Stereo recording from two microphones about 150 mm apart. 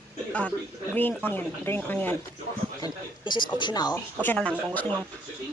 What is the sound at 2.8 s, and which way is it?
Speech, 30° left (ahead or behind).